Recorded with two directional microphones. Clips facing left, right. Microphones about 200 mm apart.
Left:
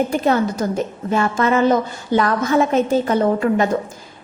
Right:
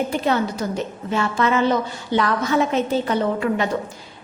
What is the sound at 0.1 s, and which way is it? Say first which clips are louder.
A woman's voice: left 3 dB; 45° left (ahead or behind).